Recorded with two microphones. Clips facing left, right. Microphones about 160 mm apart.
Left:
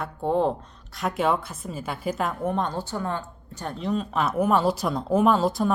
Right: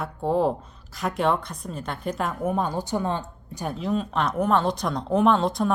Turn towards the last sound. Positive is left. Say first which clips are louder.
# even
turn(degrees=0)  # may be behind; listen again after turning